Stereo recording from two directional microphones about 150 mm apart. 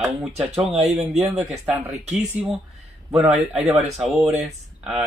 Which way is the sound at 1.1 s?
45° right (ahead or behind).